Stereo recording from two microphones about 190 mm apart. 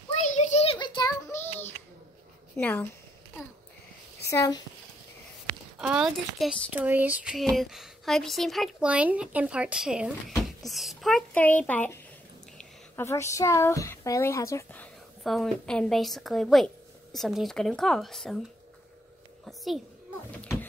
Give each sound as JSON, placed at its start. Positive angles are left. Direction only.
{"t": 0.1, "sound": "child singing", "side_deg": 40}
{"t": 2.5, "sound": "speech", "side_deg": 10}
{"t": 4.3, "sound": "speech", "side_deg": 15}
{"t": 5.8, "sound": "speech", "side_deg": -5}
{"t": 19.4, "sound": "a child's voice", "side_deg": 0}